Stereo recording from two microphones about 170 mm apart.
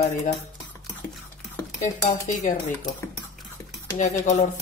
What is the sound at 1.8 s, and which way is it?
Speech, 50° left (ahead or behind).